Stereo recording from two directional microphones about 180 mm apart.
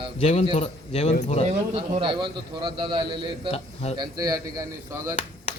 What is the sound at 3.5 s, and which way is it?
Speech, 35° left (ahead or behind).